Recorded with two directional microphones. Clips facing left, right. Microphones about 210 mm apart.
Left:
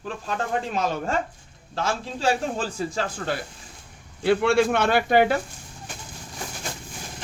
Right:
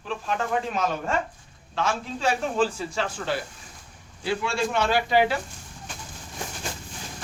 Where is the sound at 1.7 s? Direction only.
35° left (ahead or behind).